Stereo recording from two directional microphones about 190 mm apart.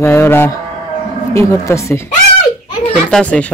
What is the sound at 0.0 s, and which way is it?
Speech, 15° left (ahead or behind).